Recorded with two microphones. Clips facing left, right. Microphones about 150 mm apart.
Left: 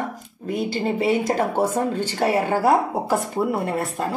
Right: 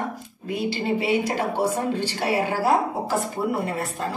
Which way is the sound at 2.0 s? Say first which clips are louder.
Left 3 dB; 45° left (ahead or behind).